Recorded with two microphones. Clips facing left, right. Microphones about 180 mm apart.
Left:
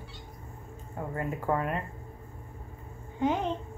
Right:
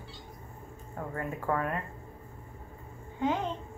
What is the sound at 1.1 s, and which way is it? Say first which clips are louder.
Speech: left 2 dB; 25° left (ahead or behind).